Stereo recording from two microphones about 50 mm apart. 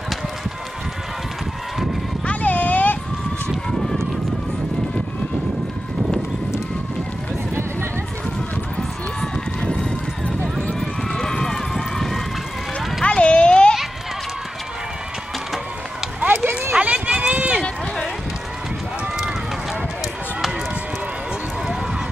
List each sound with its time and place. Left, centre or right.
2.2 s a sound: left
3.4 s run: centre
8.7 s run: centre
10.2 s clip-clop: centre
10.8 s run: centre
13.0 s a sound: left
16.7 s run: right